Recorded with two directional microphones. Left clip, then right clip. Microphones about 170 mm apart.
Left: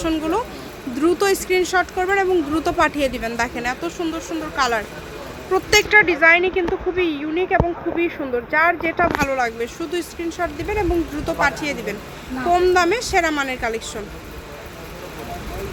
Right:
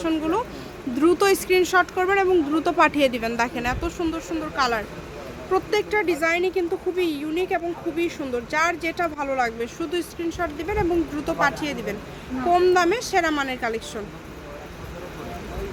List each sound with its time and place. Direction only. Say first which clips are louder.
0.0 s speech: left 2 dB; 5° left (ahead or behind)
0.9 s speech: left 1 dB; 15° right (ahead or behind); by 5.8 s 10° left (ahead or behind)
5.9 s speech: left 10 dB; 20° right (ahead or behind)
9.2 s speech: left 3 dB; centre (ahead or behind)